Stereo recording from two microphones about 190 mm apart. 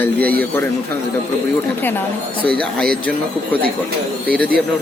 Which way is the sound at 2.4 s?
5° left (ahead or behind).